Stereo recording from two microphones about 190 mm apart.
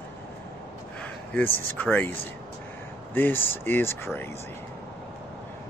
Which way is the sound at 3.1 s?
10° left (ahead or behind).